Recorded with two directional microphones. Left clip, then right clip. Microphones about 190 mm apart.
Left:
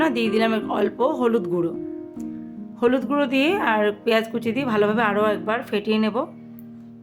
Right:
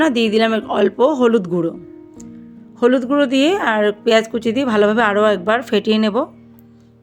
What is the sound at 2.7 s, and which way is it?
Speech, 20° right (ahead or behind).